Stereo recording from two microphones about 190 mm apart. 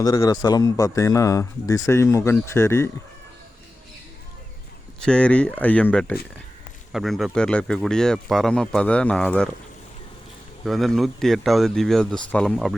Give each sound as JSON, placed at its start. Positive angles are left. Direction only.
{"t": 0.0, "sound": "a man's voice", "side_deg": 20}
{"t": 4.9, "sound": "speech", "side_deg": 5}
{"t": 10.7, "sound": "speech", "side_deg": 0}